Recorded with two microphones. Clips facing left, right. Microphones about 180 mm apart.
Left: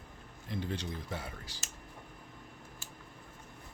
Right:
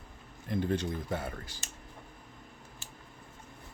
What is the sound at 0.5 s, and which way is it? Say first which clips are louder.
Speech: right 7 dB; 50° right (ahead or behind).